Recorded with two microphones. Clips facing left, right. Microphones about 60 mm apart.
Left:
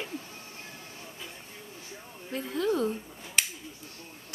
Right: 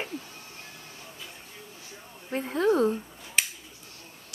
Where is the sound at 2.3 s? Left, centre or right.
Right.